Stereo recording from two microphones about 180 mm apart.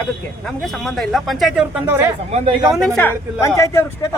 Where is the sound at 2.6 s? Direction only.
Centre (ahead or behind); by 4.1 s 15° left (ahead or behind).